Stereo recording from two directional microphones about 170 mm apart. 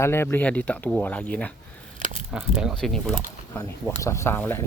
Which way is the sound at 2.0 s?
45° right (ahead or behind).